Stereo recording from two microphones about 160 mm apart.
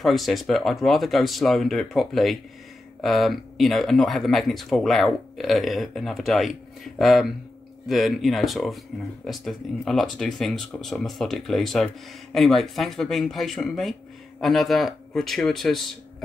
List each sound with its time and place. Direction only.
0.0 s speech: centre (ahead or behind)